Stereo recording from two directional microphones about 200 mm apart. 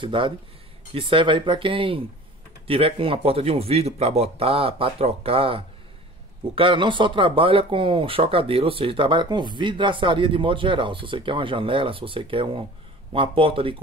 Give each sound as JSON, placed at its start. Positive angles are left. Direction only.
{"t": 0.0, "sound": "speech", "side_deg": -25}